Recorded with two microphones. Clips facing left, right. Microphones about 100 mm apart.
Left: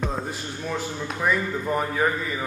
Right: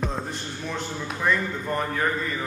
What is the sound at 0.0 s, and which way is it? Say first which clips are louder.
Speech: left 1 dB; 5° left (ahead or behind).